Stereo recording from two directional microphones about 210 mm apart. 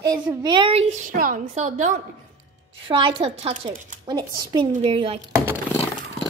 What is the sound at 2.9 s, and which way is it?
Speech, 25° right (ahead or behind).